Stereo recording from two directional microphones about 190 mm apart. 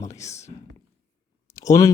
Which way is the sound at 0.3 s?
35° left (ahead or behind).